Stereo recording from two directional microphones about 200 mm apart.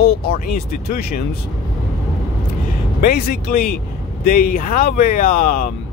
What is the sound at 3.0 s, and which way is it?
Speech, 45° left (ahead or behind).